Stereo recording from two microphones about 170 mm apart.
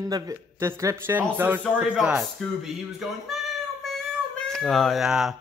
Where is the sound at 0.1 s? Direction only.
20° right (ahead or behind); by 3.3 s centre (ahead or behind).